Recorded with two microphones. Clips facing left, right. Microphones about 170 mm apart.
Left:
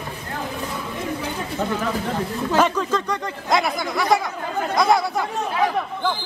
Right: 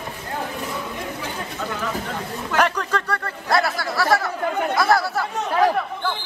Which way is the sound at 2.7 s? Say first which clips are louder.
Left 2 dB; 10° left (ahead or behind).